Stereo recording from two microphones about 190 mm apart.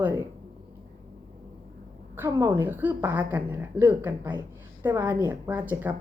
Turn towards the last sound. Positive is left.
turn(degrees=-10)  # may be behind; listen again after turning